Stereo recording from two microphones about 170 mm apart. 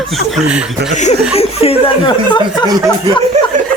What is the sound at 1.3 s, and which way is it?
Speech, 35° left (ahead or behind).